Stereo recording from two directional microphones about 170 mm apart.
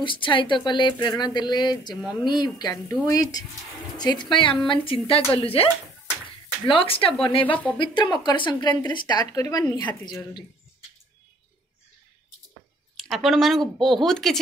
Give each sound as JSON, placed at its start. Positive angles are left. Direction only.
{"t": 0.0, "sound": "speech", "side_deg": 30}
{"t": 6.7, "sound": "speech", "side_deg": 30}
{"t": 7.4, "sound": "speech", "side_deg": 10}
{"t": 7.7, "sound": "speech", "side_deg": 25}
{"t": 12.9, "sound": "speech", "side_deg": 0}